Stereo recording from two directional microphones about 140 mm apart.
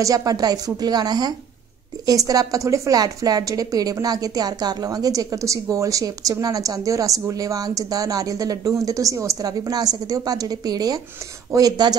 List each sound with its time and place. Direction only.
0.0 s a woman's voice: 25° right (ahead or behind)